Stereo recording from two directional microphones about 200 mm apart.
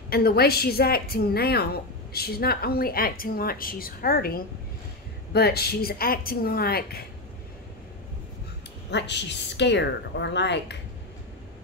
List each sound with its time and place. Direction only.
0.1 s a woman's voice: 50° left (ahead or behind)
8.9 s a woman's voice: 60° left (ahead or behind)